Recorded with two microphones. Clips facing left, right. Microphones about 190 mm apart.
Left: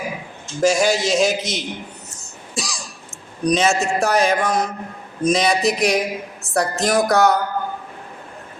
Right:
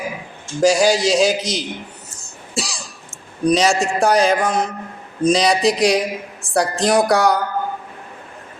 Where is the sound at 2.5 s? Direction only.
30° right (ahead or behind).